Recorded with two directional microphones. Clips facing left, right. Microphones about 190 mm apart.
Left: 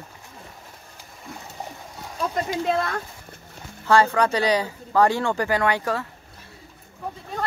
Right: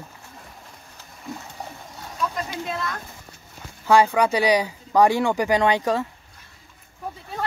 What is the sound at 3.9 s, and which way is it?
Speech, 10° right (ahead or behind).